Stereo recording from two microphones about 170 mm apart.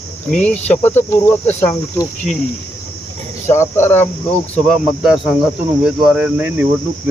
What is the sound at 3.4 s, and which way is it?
Cricket, 15° left (ahead or behind).